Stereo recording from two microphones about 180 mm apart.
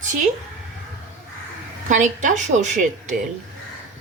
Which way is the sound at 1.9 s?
45° right (ahead or behind).